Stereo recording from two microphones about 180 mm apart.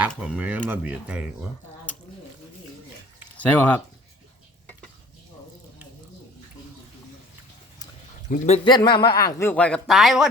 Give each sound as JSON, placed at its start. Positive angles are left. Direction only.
{"t": 0.1, "sound": "speech", "side_deg": -5}
{"t": 3.3, "sound": "speech", "side_deg": 10}
{"t": 8.3, "sound": "speech", "side_deg": 35}
{"t": 8.6, "sound": "a man's voice", "side_deg": 25}